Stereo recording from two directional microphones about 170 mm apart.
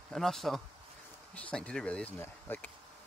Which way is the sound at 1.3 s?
5° left (ahead or behind).